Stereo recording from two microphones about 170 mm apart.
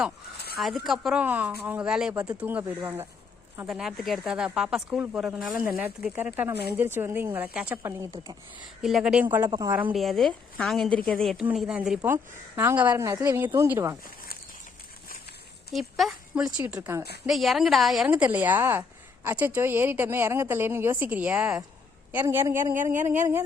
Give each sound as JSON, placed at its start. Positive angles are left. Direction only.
{"t": 0.6, "sound": "a woman's voice", "side_deg": 0}
{"t": 3.7, "sound": "a woman's voice", "side_deg": 0}
{"t": 8.8, "sound": "speech", "side_deg": 0}
{"t": 9.5, "sound": "a woman's voice", "side_deg": -20}
{"t": 9.7, "sound": "a woman's voice", "side_deg": -10}
{"t": 10.0, "sound": "a woman's voice", "side_deg": 0}
{"t": 15.7, "sound": "speech", "side_deg": 0}
{"t": 17.2, "sound": "a woman's voice", "side_deg": 0}